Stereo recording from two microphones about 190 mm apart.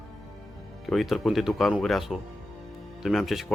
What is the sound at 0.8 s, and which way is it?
Speech, centre (ahead or behind).